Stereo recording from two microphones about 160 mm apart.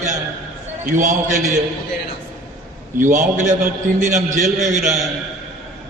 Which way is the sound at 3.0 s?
50° right (ahead or behind).